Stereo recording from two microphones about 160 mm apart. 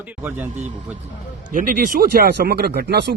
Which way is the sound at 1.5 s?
60° right (ahead or behind).